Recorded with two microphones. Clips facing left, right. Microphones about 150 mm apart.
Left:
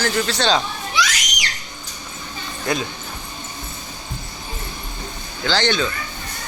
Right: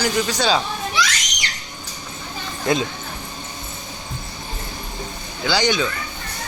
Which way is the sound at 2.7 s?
25° right (ahead or behind).